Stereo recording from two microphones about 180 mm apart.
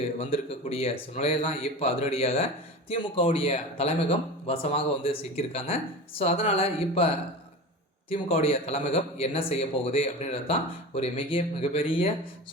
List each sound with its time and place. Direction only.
0.2 s a man's voice: 35° left (ahead or behind)
8.1 s a man's voice: 35° left (ahead or behind)